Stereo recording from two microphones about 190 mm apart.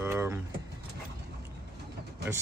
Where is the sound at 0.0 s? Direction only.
15° right (ahead or behind).